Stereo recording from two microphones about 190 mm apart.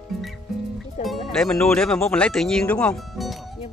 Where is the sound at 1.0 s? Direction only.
Centre (ahead or behind).